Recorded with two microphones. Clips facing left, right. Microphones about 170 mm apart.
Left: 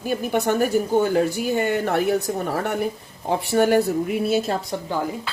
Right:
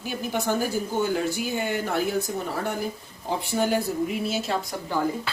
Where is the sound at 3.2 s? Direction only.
65° left (ahead or behind).